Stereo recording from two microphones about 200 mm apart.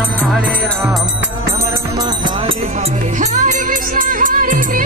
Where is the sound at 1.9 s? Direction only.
20° right (ahead or behind).